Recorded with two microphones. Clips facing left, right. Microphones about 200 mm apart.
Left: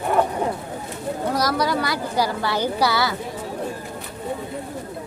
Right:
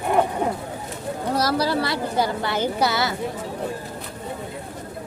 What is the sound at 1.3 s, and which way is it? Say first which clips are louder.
A woman's voice: right 2 dB; 30° right (ahead or behind).